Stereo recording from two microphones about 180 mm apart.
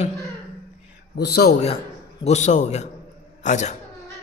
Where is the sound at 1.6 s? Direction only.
35° left (ahead or behind).